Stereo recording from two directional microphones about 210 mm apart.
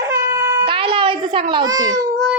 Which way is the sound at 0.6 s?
25° right (ahead or behind).